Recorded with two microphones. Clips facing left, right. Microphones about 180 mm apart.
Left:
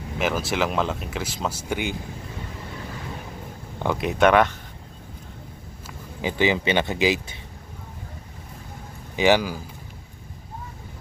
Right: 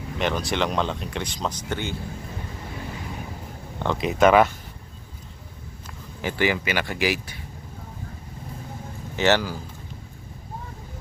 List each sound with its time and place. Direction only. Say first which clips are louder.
0.2 s speech: left 1 dB; 5° left (ahead or behind)
3.8 s speech: right 1 dB; 5° left (ahead or behind)
6.2 s speech: left 2 dB; 20° left (ahead or behind)
9.1 s speech: left 2 dB; 15° left (ahead or behind)